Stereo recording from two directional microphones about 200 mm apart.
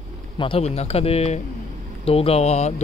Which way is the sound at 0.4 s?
30° left (ahead or behind).